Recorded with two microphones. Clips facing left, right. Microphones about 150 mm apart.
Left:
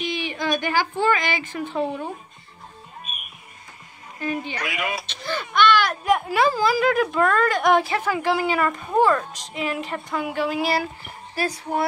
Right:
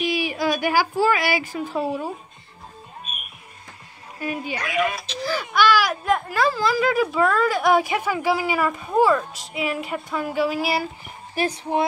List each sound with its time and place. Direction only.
0.0 s a sound: 10° right (ahead or behind)
1.5 s a woman's voice: 5° right (ahead or behind)
4.2 s a woman's voice: 10° right (ahead or behind)
4.7 s speech: 5° left (ahead or behind)
6.2 s speech: 20° left (ahead or behind)
6.6 s speech: 5° left (ahead or behind)
11.3 s speech: 20° right (ahead or behind)